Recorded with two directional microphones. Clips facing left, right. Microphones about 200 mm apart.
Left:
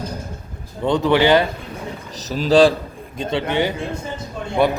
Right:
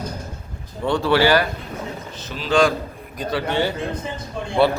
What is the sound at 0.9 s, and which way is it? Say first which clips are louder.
Speech: left 2 dB; 20° left (ahead or behind).